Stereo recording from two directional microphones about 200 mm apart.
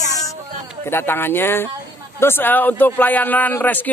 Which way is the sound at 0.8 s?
10° left (ahead or behind).